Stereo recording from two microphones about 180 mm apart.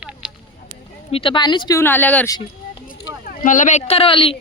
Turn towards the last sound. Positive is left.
turn(degrees=30)  # may be behind; listen again after turning